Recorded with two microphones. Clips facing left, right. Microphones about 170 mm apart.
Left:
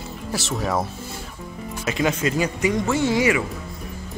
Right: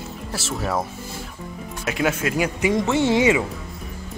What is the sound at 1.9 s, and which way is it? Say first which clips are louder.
Speech: even; 5° right (ahead or behind).